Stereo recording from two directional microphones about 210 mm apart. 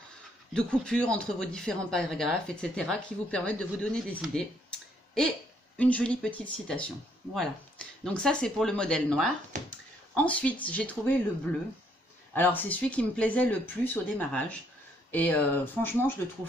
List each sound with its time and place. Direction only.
0.5 s speech: 5° left (ahead or behind)
9.5 s a sound: 35° right (ahead or behind)
10.1 s speech: 5° left (ahead or behind)
12.4 s speech: 10° left (ahead or behind)